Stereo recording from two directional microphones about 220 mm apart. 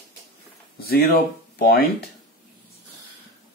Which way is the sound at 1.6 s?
45° left (ahead or behind).